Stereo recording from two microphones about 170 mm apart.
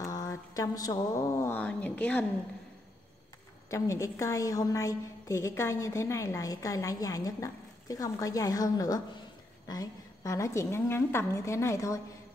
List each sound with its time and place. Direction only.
0.0 s speech: 20° left (ahead or behind)
3.7 s a woman's voice: 15° left (ahead or behind)